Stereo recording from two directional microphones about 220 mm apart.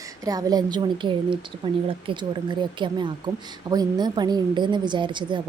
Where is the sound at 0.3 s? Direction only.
15° right (ahead or behind).